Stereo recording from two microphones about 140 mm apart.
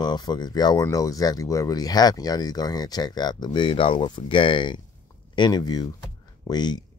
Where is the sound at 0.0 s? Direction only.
30° left (ahead or behind).